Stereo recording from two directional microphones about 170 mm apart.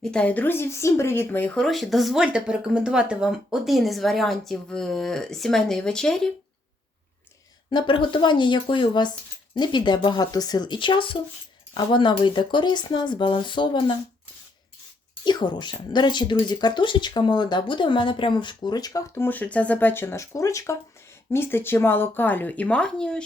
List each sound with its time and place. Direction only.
0.0 s speech: 5° left (ahead or behind)
7.7 s speech: 30° left (ahead or behind)
15.2 s speech: 25° left (ahead or behind); by 23.2 s 5° left (ahead or behind)